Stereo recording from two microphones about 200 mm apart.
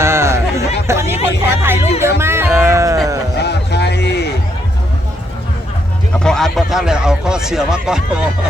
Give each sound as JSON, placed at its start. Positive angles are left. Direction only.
{"t": 0.0, "sound": "a sound", "side_deg": -15}
{"t": 0.9, "sound": "chatter", "side_deg": -15}
{"t": 1.6, "sound": "music", "side_deg": -10}
{"t": 3.3, "sound": "music", "side_deg": 55}
{"t": 6.1, "sound": "speech", "side_deg": 5}